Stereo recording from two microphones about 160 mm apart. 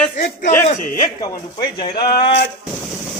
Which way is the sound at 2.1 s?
90° left.